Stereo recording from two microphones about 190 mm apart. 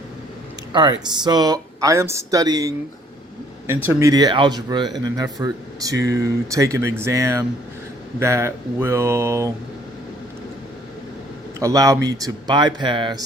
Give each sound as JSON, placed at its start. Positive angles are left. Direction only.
{"t": 0.7, "sound": "speech", "side_deg": -20}
{"t": 4.1, "sound": "speech", "side_deg": -20}
{"t": 11.6, "sound": "speech", "side_deg": -15}